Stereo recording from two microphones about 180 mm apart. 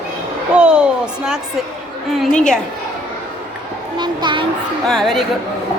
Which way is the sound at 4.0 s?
25° right (ahead or behind).